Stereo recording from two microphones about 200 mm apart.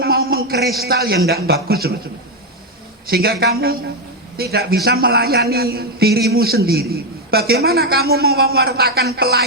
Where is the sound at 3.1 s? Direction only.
50° right (ahead or behind).